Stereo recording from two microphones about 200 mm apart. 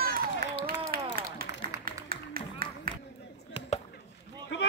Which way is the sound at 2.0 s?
45° right (ahead or behind).